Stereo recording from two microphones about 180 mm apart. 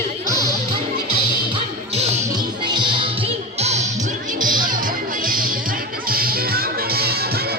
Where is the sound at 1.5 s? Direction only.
35° right (ahead or behind).